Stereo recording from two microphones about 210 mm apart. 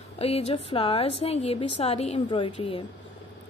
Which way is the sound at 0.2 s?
30° left (ahead or behind).